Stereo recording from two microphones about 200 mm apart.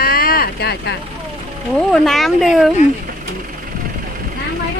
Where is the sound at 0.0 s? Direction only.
50° left (ahead or behind).